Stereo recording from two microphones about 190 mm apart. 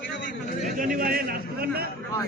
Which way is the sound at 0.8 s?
45° right (ahead or behind).